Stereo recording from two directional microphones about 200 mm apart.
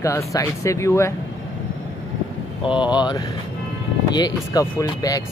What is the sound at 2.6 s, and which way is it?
Speech, 25° left (ahead or behind).